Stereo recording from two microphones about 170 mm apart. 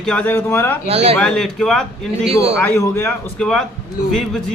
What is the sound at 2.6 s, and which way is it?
Speech, 15° left (ahead or behind).